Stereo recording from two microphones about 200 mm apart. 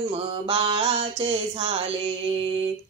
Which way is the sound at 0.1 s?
25° right (ahead or behind).